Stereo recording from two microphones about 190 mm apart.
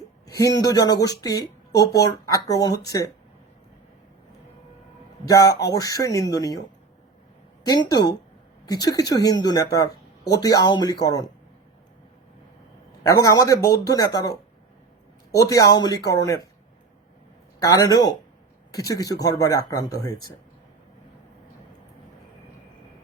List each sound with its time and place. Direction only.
0.3 s speech: 20° left (ahead or behind)
5.2 s speech: 20° left (ahead or behind)
7.7 s speech: 20° left (ahead or behind)
13.0 s speech: 20° left (ahead or behind)
17.6 s speech: 20° left (ahead or behind)